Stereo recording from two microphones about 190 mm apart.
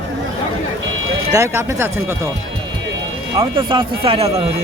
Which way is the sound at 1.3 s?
15° right (ahead or behind).